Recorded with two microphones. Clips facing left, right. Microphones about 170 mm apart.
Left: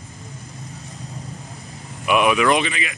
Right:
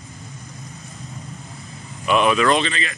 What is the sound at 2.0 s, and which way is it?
Speech, 15° left (ahead or behind).